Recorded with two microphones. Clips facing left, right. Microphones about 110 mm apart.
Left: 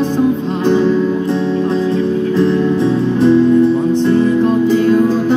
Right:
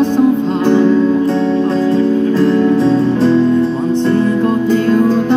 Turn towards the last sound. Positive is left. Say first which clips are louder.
# left 1 dB
turn(degrees=15)  # may be behind; listen again after turning